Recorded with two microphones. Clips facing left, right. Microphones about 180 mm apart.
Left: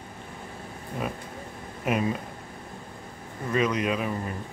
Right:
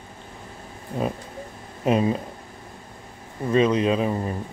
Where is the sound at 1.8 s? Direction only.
30° right (ahead or behind).